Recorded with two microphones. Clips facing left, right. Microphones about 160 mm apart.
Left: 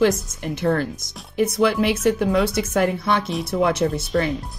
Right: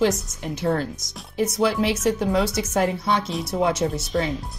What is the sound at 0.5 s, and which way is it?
Speech, 55° left (ahead or behind).